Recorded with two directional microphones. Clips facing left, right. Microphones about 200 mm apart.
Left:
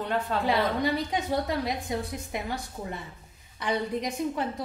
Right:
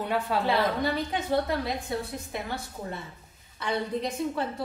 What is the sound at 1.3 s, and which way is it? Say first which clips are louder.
A woman's voice: right 3 dB; 15° left (ahead or behind).